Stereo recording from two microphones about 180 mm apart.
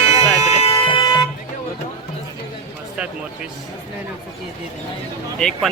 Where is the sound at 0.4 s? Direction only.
35° left (ahead or behind).